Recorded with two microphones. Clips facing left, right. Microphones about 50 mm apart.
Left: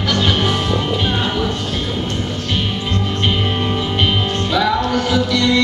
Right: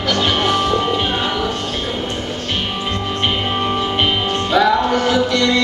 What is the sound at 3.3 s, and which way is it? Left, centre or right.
Music, centre.